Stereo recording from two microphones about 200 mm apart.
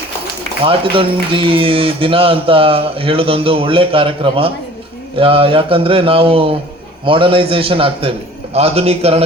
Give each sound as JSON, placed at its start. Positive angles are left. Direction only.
{"t": 0.6, "sound": "a man's voice", "side_deg": -25}